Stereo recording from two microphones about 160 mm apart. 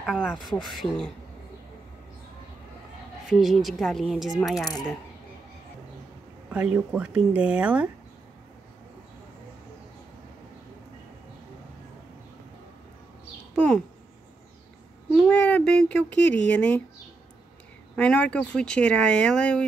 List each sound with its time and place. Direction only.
0.0 s speech: 5° right (ahead or behind)
3.3 s speech: centre (ahead or behind)
6.5 s speech: 10° right (ahead or behind)
15.1 s a sound: 5° left (ahead or behind)
16.4 s speech: 10° left (ahead or behind)
17.9 s speech: 5° left (ahead or behind)